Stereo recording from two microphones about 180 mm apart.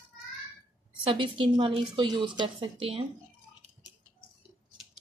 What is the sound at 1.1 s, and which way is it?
A woman's voice, 30° right (ahead or behind).